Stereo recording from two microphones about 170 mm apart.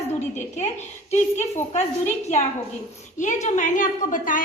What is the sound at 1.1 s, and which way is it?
Speech, 40° left (ahead or behind).